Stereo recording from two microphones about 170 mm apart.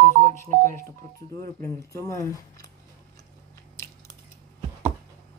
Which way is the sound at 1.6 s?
20° left (ahead or behind).